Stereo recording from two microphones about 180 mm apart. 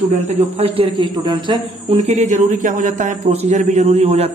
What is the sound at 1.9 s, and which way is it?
A man's voice, 40° right (ahead or behind).